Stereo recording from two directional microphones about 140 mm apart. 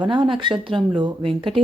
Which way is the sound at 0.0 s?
35° right (ahead or behind).